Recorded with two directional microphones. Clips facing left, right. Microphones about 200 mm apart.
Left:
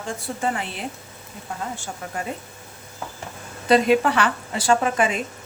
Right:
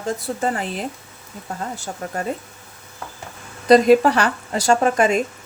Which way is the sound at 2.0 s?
40° right (ahead or behind).